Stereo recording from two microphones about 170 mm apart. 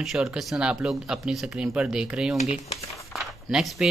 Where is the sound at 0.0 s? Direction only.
Centre (ahead or behind).